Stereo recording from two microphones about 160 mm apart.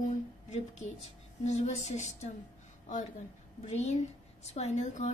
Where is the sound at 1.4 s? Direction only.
45° left (ahead or behind).